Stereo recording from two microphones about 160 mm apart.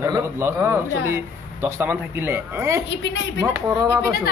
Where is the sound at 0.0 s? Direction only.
15° right (ahead or behind).